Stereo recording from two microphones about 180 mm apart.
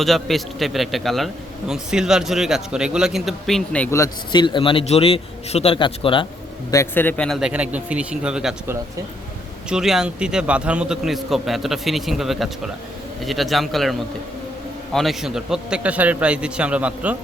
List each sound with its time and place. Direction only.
0.0 s a man's voice: centre (ahead or behind)
3.9 s a man's voice: 20° left (ahead or behind)
6.7 s a man's voice: 15° left (ahead or behind); by 8.5 s 5° right (ahead or behind)
9.6 s a man's voice: 5° right (ahead or behind)
14.9 s a man's voice: centre (ahead or behind)